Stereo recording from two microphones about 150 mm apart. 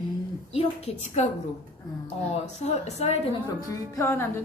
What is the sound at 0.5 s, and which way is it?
Speech, 45° left (ahead or behind).